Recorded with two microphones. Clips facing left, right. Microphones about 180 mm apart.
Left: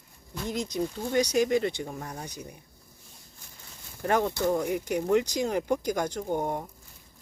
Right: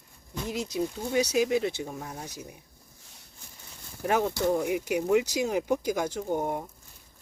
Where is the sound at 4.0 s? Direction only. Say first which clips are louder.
Even; 5° right (ahead or behind).